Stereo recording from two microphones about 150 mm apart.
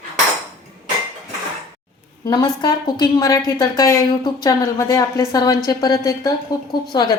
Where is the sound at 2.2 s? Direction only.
25° left (ahead or behind).